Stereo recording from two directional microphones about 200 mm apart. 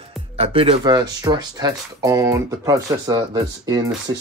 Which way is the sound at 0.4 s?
30° right (ahead or behind).